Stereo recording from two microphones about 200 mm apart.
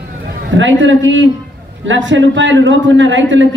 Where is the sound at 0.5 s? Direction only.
70° right (ahead or behind).